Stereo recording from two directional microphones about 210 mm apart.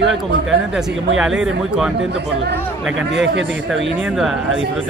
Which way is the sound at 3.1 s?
60° right (ahead or behind).